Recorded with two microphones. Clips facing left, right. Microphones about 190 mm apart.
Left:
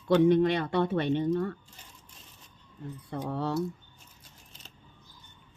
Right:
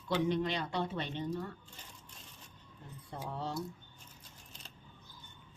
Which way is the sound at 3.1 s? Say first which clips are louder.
Left 8 dB; 65° left (ahead or behind).